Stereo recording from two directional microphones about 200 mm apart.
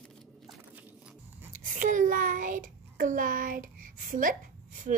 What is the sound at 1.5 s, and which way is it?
Child singing, 40° right (ahead or behind).